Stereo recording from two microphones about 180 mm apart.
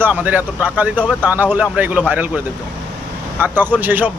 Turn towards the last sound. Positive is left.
turn(degrees=-10)  # may be behind; listen again after turning